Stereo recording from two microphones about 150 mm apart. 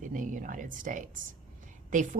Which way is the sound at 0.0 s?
60° right (ahead or behind).